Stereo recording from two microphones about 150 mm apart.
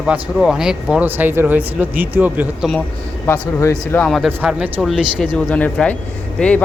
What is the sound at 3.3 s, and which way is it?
Speech, 20° left (ahead or behind).